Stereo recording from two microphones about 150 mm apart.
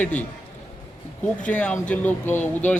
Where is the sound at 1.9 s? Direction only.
10° left (ahead or behind).